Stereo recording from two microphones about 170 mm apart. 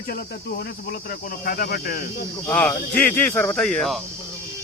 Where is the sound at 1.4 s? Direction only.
60° left (ahead or behind).